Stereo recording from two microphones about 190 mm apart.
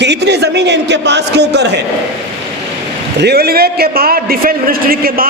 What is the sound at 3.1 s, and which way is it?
A man's voice, 55° right (ahead or behind).